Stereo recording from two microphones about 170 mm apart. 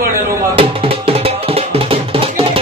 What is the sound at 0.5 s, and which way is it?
Music, 35° right (ahead or behind).